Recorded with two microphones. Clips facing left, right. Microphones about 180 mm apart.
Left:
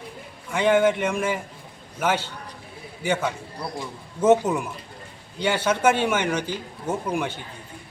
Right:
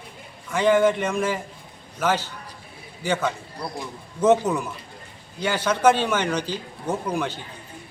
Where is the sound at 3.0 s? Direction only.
15° left (ahead or behind).